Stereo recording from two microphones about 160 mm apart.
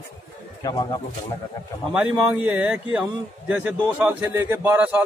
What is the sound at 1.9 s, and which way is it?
A man's voice, 10° right (ahead or behind).